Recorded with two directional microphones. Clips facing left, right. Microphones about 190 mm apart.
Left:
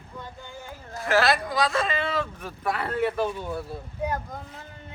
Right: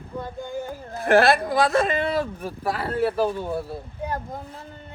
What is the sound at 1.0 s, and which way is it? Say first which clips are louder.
Speech: right 5 dB; 55° right (ahead or behind).